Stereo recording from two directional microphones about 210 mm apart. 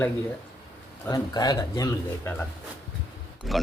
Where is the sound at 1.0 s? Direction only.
20° left (ahead or behind).